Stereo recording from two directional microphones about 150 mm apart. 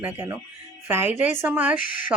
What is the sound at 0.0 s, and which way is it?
Speech, 15° right (ahead or behind).